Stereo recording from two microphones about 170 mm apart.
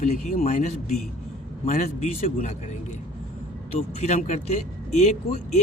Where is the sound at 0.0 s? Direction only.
45° left (ahead or behind).